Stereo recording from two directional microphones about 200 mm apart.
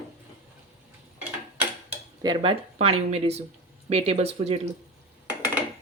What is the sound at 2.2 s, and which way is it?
Speech, 25° right (ahead or behind).